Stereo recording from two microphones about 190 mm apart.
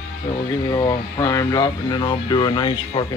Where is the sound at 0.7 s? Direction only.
20° left (ahead or behind).